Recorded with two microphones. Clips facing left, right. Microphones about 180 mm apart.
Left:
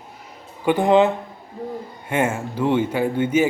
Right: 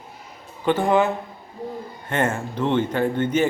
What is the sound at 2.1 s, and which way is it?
A man's voice, 10° left (ahead or behind).